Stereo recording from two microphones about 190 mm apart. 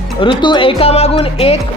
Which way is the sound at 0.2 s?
25° left (ahead or behind).